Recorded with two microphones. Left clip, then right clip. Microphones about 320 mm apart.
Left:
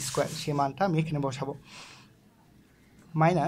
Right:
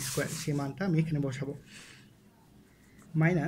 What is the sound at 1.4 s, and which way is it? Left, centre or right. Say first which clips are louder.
Speech: left 5 dB; left.